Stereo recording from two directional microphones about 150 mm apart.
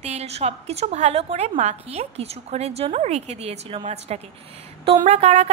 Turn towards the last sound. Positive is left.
turn(degrees=-45)  # may be behind; listen again after turning